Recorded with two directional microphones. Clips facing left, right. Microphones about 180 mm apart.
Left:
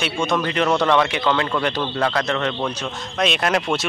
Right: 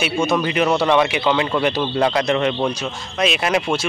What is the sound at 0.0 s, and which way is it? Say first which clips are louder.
A man's voice: right 3 dB; 5° right (ahead or behind).